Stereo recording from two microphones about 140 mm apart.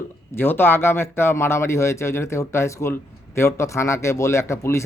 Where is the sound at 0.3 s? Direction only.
15° left (ahead or behind).